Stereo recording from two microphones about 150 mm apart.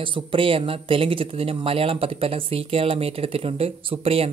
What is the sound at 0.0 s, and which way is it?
Speech, 35° right (ahead or behind).